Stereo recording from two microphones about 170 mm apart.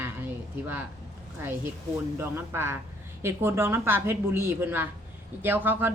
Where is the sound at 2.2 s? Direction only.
15° right (ahead or behind).